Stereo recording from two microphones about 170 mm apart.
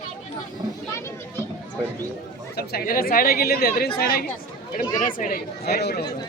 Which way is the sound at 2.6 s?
60° left (ahead or behind).